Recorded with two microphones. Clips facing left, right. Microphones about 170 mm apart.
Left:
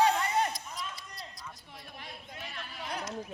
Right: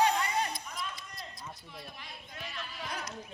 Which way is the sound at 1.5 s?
50° left (ahead or behind).